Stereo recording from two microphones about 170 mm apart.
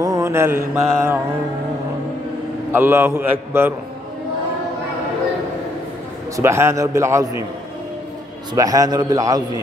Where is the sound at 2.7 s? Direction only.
15° right (ahead or behind).